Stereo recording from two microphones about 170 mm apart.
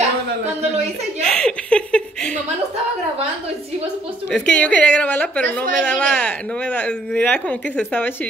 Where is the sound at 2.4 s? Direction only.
35° right (ahead or behind).